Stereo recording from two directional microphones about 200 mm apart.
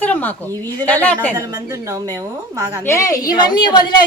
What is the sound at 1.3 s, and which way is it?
A woman's voice, 15° right (ahead or behind).